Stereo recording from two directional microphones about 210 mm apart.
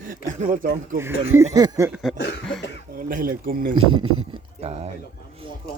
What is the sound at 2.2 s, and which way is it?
Cough, 55° left (ahead or behind).